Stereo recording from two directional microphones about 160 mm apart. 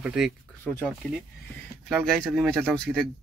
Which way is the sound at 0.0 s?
5° right (ahead or behind).